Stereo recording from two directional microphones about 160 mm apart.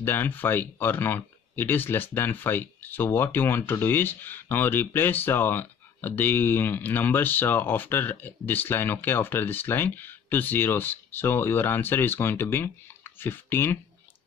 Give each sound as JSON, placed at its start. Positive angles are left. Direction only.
{"t": 0.0, "sound": "speech", "side_deg": 15}